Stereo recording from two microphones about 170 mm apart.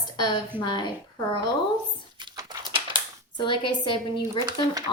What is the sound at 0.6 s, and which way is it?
Speech, 25° left (ahead or behind).